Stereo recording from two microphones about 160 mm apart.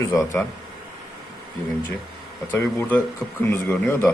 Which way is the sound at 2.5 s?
15° left (ahead or behind).